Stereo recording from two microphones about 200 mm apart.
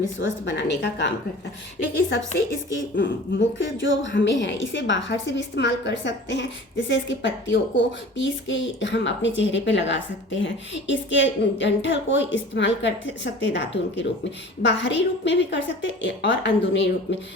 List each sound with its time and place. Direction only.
0.3 s a woman's voice: 60° left (ahead or behind)
3.0 s a woman's voice: 65° left (ahead or behind)